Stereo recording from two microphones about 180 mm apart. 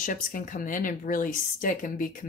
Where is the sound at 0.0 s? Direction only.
50° left (ahead or behind).